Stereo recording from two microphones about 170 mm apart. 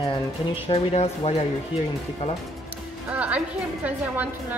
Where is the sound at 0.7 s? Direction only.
35° left (ahead or behind).